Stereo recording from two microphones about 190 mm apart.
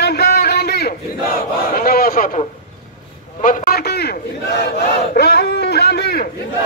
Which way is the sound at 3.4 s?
45° left (ahead or behind).